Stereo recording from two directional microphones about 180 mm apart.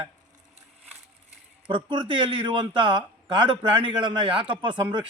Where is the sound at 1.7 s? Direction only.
25° right (ahead or behind).